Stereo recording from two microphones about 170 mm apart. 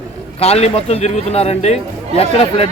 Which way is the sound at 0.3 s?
35° left (ahead or behind).